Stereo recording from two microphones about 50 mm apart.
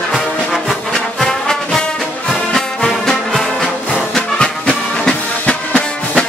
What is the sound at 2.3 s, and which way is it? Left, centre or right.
Music, centre.